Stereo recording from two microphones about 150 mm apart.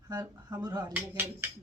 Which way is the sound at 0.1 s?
25° right (ahead or behind).